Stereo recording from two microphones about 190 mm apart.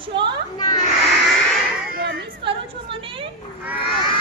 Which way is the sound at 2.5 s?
30° right (ahead or behind).